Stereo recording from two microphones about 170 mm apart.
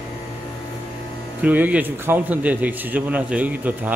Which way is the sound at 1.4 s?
10° right (ahead or behind).